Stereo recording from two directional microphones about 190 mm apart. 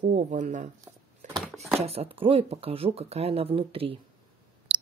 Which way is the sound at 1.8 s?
30° right (ahead or behind).